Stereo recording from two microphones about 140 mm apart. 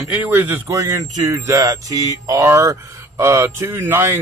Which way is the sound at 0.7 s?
25° right (ahead or behind).